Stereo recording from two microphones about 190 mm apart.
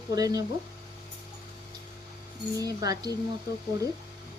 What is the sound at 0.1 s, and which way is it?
Speech, 20° right (ahead or behind).